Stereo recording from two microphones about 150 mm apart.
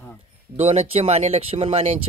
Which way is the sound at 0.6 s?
45° right (ahead or behind).